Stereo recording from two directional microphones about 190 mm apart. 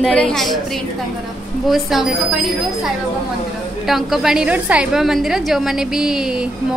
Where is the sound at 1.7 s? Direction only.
Centre (ahead or behind).